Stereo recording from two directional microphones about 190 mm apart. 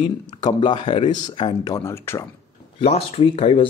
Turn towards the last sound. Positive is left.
turn(degrees=30)  # may be behind; listen again after turning